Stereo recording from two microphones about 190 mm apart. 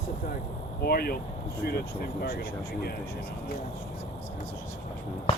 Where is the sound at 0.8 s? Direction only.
55° left (ahead or behind).